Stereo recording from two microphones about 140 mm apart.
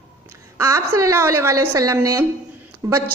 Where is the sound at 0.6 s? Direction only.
20° right (ahead or behind).